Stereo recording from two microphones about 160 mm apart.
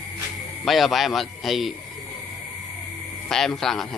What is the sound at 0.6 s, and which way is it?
A man's voice, centre (ahead or behind).